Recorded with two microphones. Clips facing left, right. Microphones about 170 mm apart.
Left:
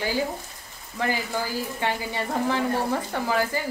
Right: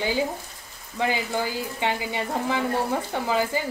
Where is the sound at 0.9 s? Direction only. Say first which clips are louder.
Right 2 dB; 20° right (ahead or behind).